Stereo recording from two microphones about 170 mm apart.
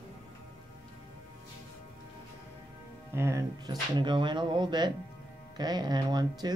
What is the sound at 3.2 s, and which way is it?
Speech, 15° right (ahead or behind).